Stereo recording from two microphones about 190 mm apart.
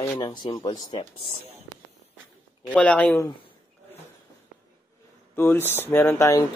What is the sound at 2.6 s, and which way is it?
Speech, 5° left (ahead or behind).